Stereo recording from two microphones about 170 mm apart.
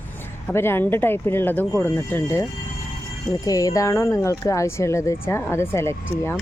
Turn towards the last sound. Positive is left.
turn(degrees=15)  # may be behind; listen again after turning